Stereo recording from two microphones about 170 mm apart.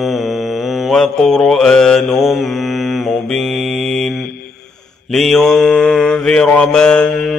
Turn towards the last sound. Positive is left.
turn(degrees=5)  # may be behind; listen again after turning